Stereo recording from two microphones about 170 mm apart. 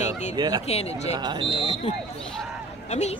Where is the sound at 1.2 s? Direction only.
25° right (ahead or behind).